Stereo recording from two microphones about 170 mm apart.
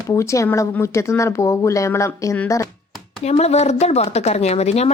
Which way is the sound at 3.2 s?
40° left (ahead or behind).